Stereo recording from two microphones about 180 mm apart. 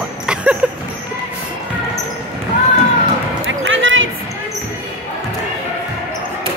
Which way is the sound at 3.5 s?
90° right.